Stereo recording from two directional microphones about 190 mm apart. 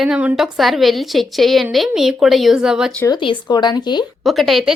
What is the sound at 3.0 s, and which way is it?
Speech, 25° left (ahead or behind).